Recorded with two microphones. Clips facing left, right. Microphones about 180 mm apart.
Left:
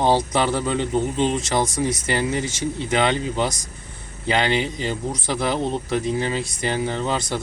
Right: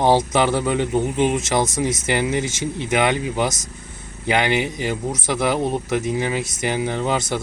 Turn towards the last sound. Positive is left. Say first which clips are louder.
# right 2 dB
turn(degrees=-20)  # may be behind; listen again after turning